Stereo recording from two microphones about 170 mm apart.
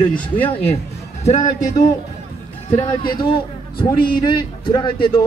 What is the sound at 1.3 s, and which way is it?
Speech, 45° left (ahead or behind).